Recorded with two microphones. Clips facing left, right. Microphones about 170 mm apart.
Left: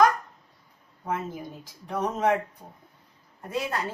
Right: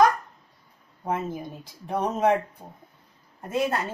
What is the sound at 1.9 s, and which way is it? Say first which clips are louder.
Speech: right 2 dB; 25° right (ahead or behind).